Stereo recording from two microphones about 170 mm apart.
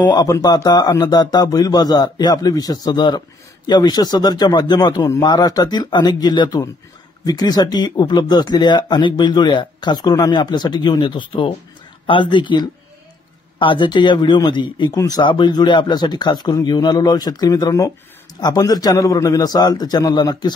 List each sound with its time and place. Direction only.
0.0 s a man's voice: 25° left (ahead or behind)